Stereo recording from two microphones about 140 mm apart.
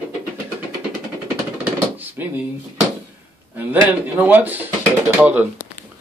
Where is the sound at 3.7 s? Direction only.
15° right (ahead or behind).